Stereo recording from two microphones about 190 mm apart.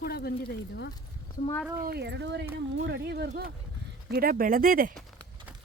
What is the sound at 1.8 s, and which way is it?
Speech, 60° right (ahead or behind).